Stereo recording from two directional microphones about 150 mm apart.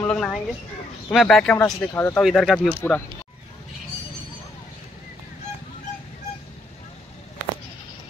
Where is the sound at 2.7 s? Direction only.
15° left (ahead or behind).